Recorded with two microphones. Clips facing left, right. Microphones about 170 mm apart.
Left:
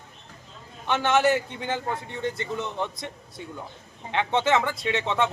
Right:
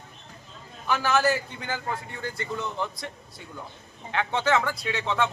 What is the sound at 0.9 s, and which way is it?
A man's voice, 25° left (ahead or behind).